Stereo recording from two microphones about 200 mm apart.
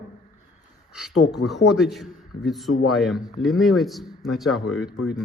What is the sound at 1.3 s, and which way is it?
Speech, centre (ahead or behind).